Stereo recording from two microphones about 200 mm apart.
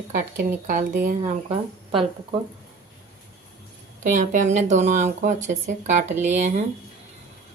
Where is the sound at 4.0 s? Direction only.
40° right (ahead or behind).